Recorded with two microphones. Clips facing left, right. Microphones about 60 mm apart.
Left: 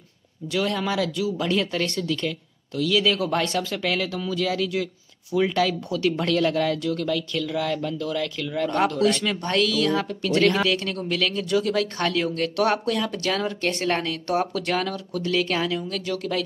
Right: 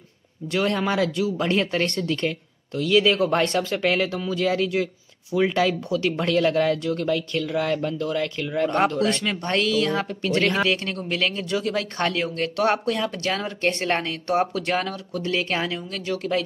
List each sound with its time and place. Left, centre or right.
0.5 s speech: right
4.2 s speech: centre
5.3 s speech: centre